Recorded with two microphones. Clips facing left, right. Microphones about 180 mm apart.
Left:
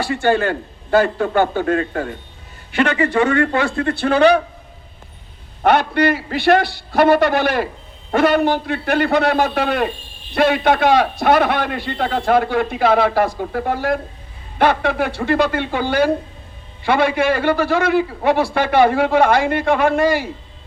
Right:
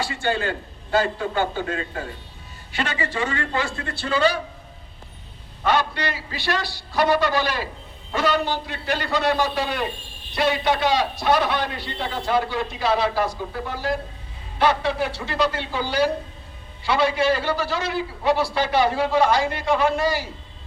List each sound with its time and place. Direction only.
0.0 s a man's voice: 55° left (ahead or behind)
5.6 s a man's voice: 55° left (ahead or behind)